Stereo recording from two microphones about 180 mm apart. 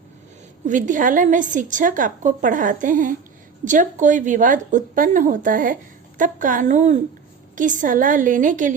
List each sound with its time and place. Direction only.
0.6 s a woman's voice: 45° right (ahead or behind)